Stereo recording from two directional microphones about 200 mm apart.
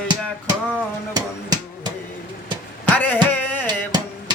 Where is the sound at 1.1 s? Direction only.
20° right (ahead or behind).